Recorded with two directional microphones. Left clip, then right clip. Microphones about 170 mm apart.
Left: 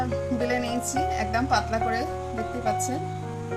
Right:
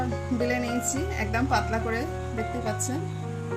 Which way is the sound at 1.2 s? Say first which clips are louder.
Right 1 dB; 20° left (ahead or behind).